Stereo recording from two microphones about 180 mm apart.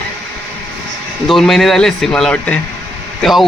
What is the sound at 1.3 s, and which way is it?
Speech, centre (ahead or behind).